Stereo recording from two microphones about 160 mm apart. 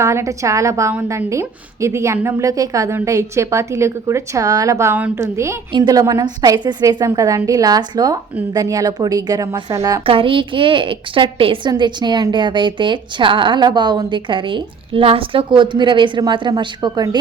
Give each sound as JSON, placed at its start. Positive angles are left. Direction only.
{"t": 0.0, "sound": "a woman's voice", "side_deg": -20}
{"t": 10.1, "sound": "a woman's voice", "side_deg": -35}